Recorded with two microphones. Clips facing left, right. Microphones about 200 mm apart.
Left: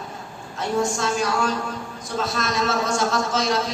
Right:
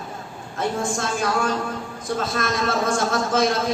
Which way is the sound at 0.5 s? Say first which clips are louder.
Left 1 dB; 55° right (ahead or behind).